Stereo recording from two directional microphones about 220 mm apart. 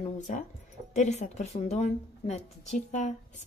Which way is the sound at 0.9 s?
30° left (ahead or behind).